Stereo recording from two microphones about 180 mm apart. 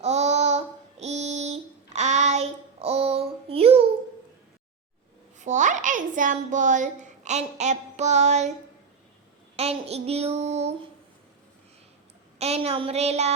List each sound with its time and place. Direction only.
0.0 s child singing: 40° right (ahead or behind)
5.4 s a sound: 45° right (ahead or behind)
9.6 s child singing: 35° right (ahead or behind)
12.4 s child singing: 35° right (ahead or behind)